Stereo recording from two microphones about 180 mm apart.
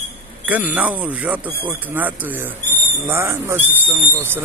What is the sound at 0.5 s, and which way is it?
Speech, 10° right (ahead or behind).